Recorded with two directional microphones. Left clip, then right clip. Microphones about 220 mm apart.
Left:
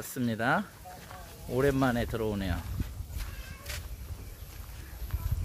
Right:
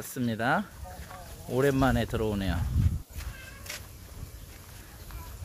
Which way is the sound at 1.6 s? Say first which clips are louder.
Right 2 dB; 15° right (ahead or behind).